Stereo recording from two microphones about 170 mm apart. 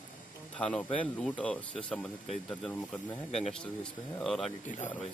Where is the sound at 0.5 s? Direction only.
5° left (ahead or behind).